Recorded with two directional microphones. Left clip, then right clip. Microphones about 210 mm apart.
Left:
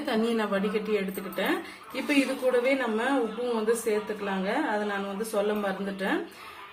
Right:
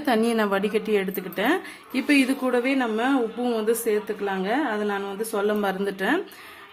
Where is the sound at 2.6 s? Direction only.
50° right (ahead or behind).